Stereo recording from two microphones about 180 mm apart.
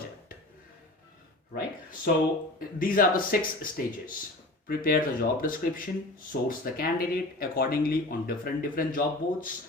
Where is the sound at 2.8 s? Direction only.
50° left (ahead or behind).